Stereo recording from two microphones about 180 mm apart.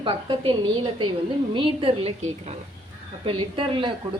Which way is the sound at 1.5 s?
30° right (ahead or behind).